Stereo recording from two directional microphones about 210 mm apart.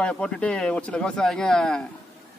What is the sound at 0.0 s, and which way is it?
A man's voice, 5° left (ahead or behind).